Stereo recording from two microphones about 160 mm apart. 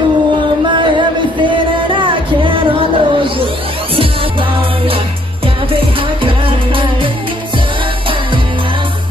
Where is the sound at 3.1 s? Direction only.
30° right (ahead or behind).